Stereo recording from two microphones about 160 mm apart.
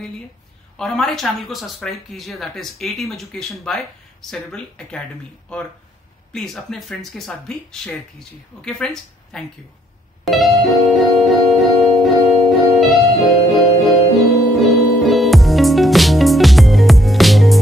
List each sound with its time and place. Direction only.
0.7 s speech: 5° left (ahead or behind)
10.2 s music: centre (ahead or behind)
13.7 s music: 40° left (ahead or behind)
14.3 s music: centre (ahead or behind)